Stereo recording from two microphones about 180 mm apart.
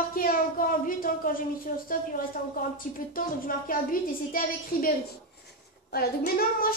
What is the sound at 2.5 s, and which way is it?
A woman's voice, 50° left (ahead or behind).